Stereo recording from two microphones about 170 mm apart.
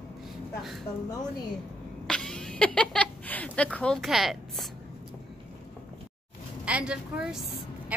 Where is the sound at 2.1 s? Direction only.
5° left (ahead or behind).